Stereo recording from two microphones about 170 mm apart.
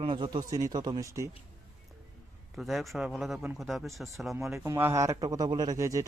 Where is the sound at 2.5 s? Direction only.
Centre (ahead or behind).